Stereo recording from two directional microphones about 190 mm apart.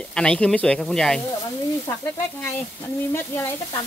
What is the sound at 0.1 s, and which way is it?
Speech, 5° left (ahead or behind).